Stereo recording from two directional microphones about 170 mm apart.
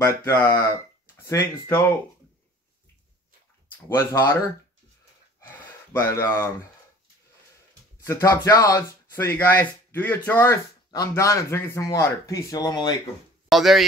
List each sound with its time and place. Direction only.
0.0 s speech: 15° left (ahead or behind)
3.7 s speech: 15° left (ahead or behind)
5.9 s speech: 15° left (ahead or behind)
8.0 s speech: 20° left (ahead or behind)
13.5 s speech: centre (ahead or behind)